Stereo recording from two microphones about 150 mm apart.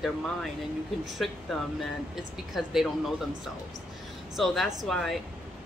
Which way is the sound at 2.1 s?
Centre (ahead or behind).